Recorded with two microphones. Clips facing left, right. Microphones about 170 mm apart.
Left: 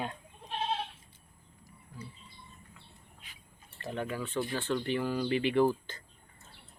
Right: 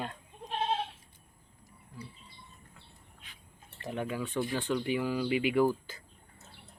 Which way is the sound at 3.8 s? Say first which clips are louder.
Right 1 dB; 10° right (ahead or behind).